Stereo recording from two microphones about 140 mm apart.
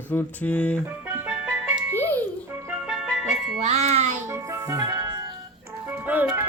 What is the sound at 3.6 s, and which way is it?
Music, 50° right (ahead or behind).